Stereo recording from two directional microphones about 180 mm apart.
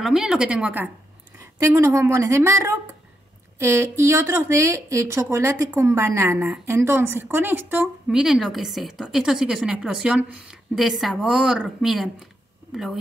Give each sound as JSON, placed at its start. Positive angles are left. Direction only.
{"t": 0.0, "sound": "a woman's voice", "side_deg": 0}